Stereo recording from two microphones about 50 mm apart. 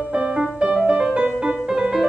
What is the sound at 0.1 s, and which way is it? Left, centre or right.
Music, centre.